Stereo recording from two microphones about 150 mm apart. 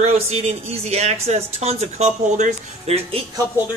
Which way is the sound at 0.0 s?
45° right (ahead or behind).